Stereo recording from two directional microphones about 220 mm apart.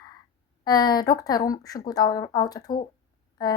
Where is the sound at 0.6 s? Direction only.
15° left (ahead or behind).